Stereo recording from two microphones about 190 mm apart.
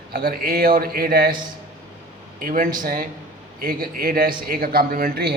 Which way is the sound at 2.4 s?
50° right (ahead or behind).